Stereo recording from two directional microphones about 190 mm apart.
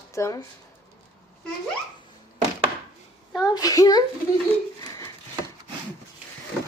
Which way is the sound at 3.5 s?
20° left (ahead or behind).